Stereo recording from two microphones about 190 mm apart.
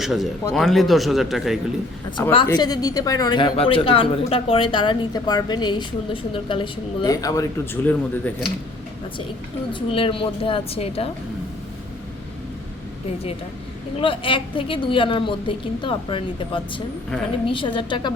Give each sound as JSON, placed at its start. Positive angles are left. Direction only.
{"t": 0.0, "sound": "speech", "side_deg": 0}
{"t": 2.3, "sound": "speech", "side_deg": 25}
{"t": 9.7, "sound": "speech", "side_deg": 30}
{"t": 14.0, "sound": "speech", "side_deg": 25}